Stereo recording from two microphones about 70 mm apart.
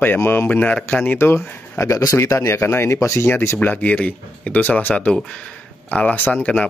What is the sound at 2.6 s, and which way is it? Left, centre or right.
Speech, left.